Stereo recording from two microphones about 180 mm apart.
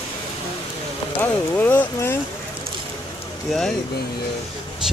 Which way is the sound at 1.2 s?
10° left (ahead or behind).